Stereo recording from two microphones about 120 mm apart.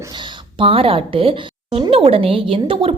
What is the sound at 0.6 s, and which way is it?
A woman's voice, 50° right (ahead or behind).